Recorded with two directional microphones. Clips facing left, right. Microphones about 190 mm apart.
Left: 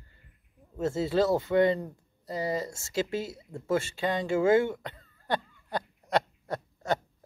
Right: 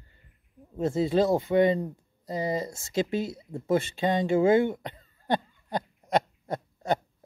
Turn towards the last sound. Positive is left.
turn(degrees=-25)  # may be behind; listen again after turning